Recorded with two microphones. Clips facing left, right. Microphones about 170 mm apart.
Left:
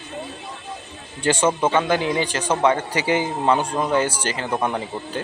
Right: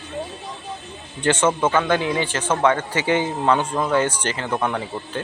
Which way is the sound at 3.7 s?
20° left (ahead or behind).